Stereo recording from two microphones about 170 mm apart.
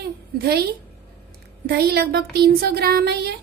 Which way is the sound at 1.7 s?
65° right (ahead or behind).